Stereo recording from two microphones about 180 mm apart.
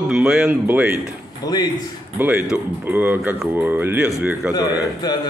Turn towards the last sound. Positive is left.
turn(degrees=20)  # may be behind; listen again after turning